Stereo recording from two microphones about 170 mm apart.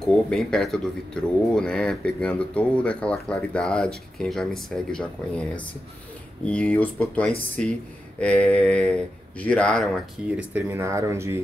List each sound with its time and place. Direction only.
0.0 s speech: 5° left (ahead or behind)
10.2 s speech: 10° right (ahead or behind)